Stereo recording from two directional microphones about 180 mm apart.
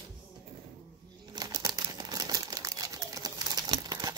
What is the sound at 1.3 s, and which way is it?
Crumpling, 20° right (ahead or behind).